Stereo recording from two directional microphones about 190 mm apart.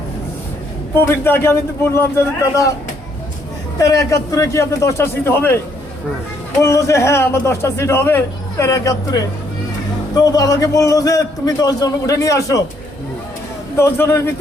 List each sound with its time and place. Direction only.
0.9 s a man's voice: 10° left (ahead or behind)
3.8 s a man's voice: 15° left (ahead or behind)
6.6 s a man's voice: 15° left (ahead or behind)
13.7 s a man's voice: 15° left (ahead or behind)